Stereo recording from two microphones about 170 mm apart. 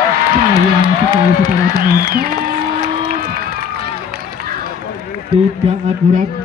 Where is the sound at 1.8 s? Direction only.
60° right (ahead or behind).